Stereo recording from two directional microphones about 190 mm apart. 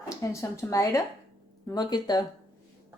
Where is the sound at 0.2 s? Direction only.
15° left (ahead or behind).